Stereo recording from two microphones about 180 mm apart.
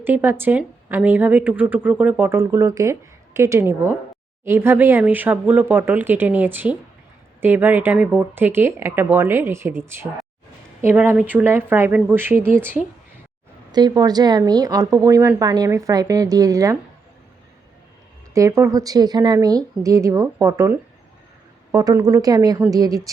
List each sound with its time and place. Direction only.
0.0 s a woman's voice: 10° right (ahead or behind)
13.7 s speech: 25° right (ahead or behind)
18.3 s speech: 15° right (ahead or behind)